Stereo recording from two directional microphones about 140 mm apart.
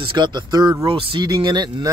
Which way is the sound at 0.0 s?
35° right (ahead or behind).